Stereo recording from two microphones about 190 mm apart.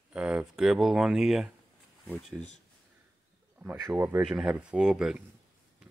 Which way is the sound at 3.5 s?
10° right (ahead or behind).